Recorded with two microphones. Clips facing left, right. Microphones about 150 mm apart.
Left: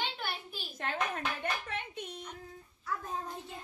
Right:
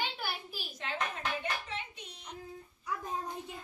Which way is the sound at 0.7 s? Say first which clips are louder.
Left 3 dB; 50° left (ahead or behind).